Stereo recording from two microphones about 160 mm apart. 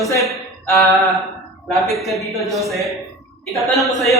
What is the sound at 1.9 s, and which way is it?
A man's voice, centre (ahead or behind).